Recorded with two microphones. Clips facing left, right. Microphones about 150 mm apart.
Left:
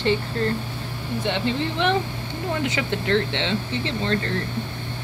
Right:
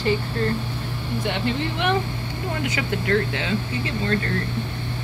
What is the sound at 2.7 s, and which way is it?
Speech, 25° left (ahead or behind).